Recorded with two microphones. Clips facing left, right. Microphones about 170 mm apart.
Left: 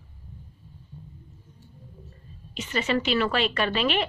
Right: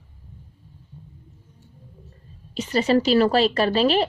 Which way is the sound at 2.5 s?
35° right (ahead or behind).